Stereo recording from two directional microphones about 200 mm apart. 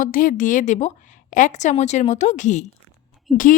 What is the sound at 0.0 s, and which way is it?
A woman's voice, 45° left (ahead or behind).